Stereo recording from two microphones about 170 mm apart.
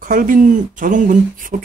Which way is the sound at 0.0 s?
55° right (ahead or behind).